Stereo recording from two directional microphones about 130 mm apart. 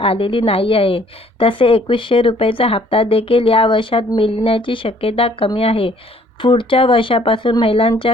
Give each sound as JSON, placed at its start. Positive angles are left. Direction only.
{"t": 0.0, "sound": "a woman's voice", "side_deg": 45}